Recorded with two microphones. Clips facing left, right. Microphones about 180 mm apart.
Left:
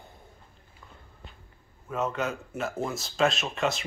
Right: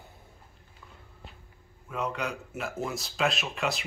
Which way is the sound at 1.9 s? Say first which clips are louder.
Left 3 dB; 45° left (ahead or behind).